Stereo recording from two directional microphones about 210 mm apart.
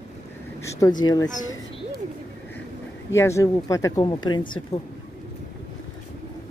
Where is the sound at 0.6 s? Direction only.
20° left (ahead or behind).